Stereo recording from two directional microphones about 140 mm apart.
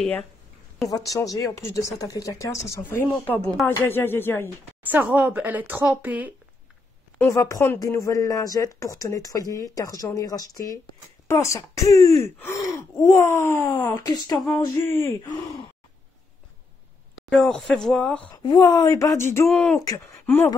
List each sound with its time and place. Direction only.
0.8 s speech: 25° left (ahead or behind)
3.3 s speech: 5° left (ahead or behind)
4.8 s speech: 10° right (ahead or behind)
7.2 s speech: 20° left (ahead or behind)
17.3 s speech: 5° left (ahead or behind)
18.3 s speech: 30° left (ahead or behind)
19.4 s speech: 5° left (ahead or behind)